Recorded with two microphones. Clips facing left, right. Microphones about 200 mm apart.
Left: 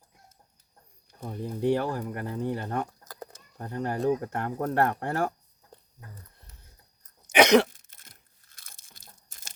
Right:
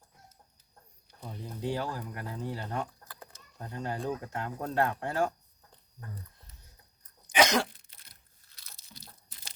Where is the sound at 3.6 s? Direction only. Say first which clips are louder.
Left 7 dB; 55° left (ahead or behind).